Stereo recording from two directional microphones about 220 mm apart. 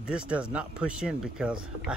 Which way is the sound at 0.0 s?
5° right (ahead or behind).